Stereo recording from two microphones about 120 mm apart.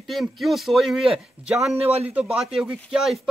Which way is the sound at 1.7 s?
55° right (ahead or behind).